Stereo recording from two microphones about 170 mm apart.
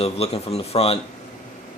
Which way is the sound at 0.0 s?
35° left (ahead or behind).